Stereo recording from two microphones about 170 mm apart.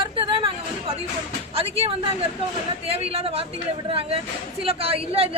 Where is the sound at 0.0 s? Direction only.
30° right (ahead or behind).